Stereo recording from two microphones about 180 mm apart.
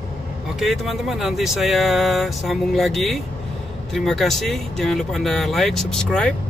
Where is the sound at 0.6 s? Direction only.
Centre (ahead or behind).